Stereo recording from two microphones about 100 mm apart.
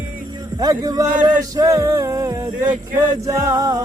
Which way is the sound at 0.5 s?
40° right (ahead or behind).